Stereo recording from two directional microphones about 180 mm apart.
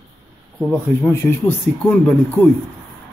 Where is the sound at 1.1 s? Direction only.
10° left (ahead or behind).